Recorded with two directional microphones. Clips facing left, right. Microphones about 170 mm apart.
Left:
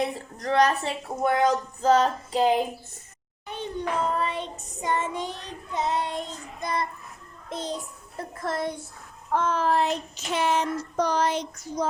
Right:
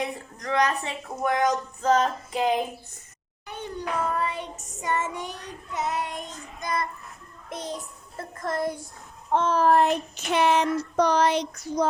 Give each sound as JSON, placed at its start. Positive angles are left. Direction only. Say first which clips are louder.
{"t": 0.0, "sound": "a woman's voice", "louder": "left 3 dB", "side_deg": 35}
{"t": 3.4, "sound": "child singing", "louder": "left 2 dB", "side_deg": 20}
{"t": 8.4, "sound": "speech", "louder": "right 1 dB", "side_deg": 0}
{"t": 9.3, "sound": "child singing", "louder": "right 3 dB", "side_deg": -30}